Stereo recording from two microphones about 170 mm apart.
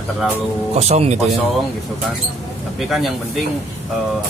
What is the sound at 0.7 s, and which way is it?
Speech, 40° right (ahead or behind).